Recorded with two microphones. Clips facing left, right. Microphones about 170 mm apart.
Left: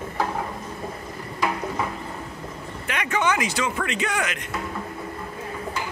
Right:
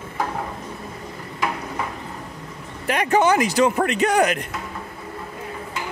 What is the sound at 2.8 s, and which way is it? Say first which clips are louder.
Speech: right 6 dB; 35° right (ahead or behind).